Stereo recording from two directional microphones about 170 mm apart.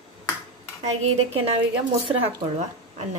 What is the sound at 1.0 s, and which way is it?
Speech, 35° right (ahead or behind).